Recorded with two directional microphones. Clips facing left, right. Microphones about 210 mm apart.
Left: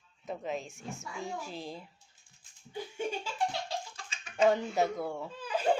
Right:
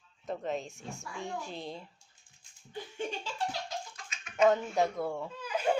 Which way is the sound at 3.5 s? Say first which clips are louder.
Left 2 dB; 30° left (ahead or behind).